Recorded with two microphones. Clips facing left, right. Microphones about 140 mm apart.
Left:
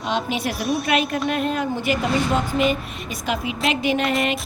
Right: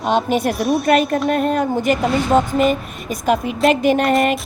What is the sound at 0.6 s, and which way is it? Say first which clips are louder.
Speech: right 5 dB; centre (ahead or behind).